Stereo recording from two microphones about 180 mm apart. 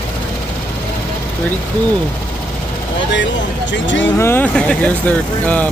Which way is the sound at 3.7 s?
90° left.